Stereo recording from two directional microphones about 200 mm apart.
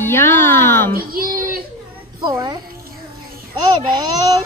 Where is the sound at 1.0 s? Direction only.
45° right (ahead or behind).